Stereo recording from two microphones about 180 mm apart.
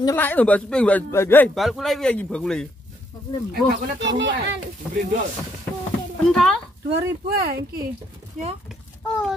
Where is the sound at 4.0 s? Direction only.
85° right.